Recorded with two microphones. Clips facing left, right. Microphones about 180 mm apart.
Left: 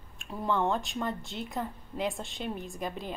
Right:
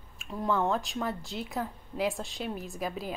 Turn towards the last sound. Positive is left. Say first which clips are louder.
# right 1 dB
turn(degrees=-5)  # may be behind; listen again after turning